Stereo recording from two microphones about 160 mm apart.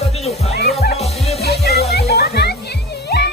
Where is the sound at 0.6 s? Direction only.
90° left.